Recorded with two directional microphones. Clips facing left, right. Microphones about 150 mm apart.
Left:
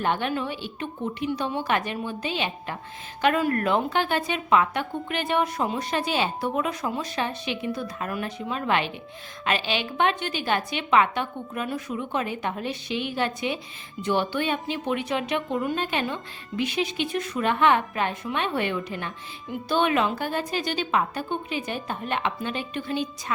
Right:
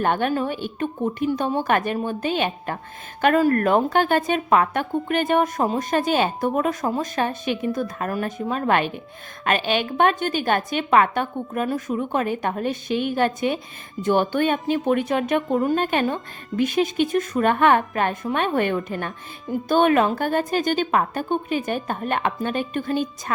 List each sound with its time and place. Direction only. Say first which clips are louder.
0.0 s speech: right 4 dB; 50° right (ahead or behind)